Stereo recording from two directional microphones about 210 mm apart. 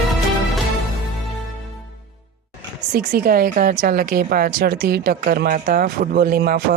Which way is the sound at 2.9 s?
40° right (ahead or behind).